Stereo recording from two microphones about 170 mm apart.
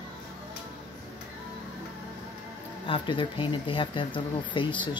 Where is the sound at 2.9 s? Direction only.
30° left (ahead or behind).